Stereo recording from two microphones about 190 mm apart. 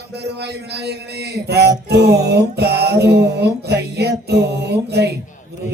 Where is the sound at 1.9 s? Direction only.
60° right (ahead or behind).